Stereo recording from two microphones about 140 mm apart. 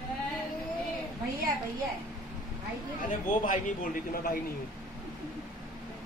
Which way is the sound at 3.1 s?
75° left (ahead or behind).